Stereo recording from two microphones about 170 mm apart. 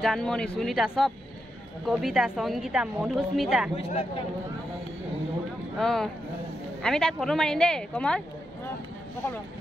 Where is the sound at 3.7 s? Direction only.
35° left (ahead or behind).